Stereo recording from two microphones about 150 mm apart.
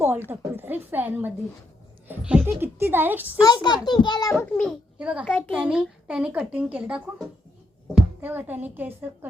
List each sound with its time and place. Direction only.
0.3 s speech: 15° right (ahead or behind)
3.4 s a child's voice: 30° left (ahead or behind)
4.4 s a child's voice: centre (ahead or behind)
5.5 s speech: 5° right (ahead or behind)